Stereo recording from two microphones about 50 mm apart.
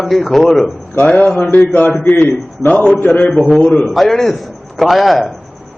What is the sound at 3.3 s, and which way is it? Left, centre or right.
A man's voice, centre.